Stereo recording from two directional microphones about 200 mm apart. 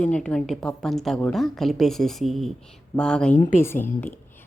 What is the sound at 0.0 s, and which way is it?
A woman's voice, 5° left (ahead or behind).